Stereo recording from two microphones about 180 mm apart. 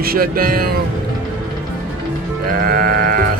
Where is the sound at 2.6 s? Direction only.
50° right (ahead or behind).